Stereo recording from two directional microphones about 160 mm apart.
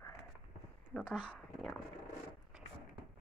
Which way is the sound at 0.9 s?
5° left (ahead or behind).